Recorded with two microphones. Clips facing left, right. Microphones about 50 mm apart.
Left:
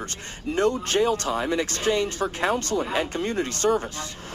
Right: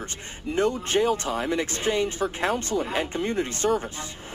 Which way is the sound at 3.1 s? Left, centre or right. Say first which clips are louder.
Even; centre.